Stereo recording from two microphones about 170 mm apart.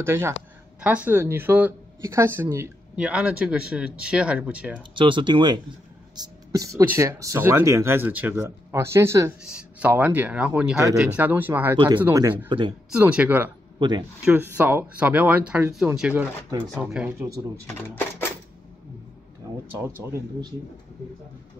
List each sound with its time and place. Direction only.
0.0 s speech: 15° right (ahead or behind)
4.9 s speech: 30° right (ahead or behind)
9.4 s speech: 5° right (ahead or behind); by 12.7 s 25° right (ahead or behind)
12.9 s speech: 5° right (ahead or behind)
13.7 s speech: 25° right (ahead or behind)
14.2 s speech: 10° right (ahead or behind)
17.7 s speech: 10° left (ahead or behind)
20.0 s speech: 15° right (ahead or behind)